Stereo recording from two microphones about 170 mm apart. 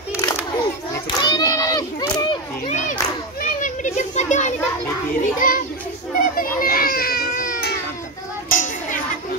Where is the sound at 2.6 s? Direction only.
45° left (ahead or behind).